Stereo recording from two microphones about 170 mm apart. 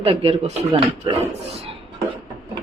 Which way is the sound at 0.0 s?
35° right (ahead or behind).